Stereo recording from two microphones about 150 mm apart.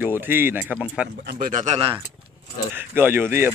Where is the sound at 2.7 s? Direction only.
15° right (ahead or behind).